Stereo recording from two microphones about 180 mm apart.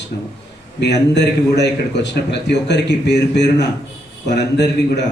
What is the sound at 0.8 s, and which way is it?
A man's voice, 70° left (ahead or behind).